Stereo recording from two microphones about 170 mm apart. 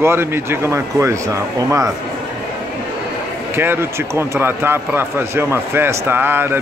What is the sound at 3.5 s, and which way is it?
Speech, 15° right (ahead or behind).